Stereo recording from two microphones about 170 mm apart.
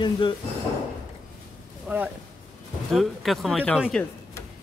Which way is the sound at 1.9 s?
5° right (ahead or behind).